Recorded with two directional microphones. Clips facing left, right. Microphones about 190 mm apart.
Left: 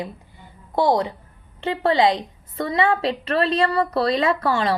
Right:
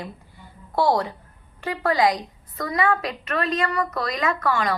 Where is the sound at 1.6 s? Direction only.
25° left (ahead or behind).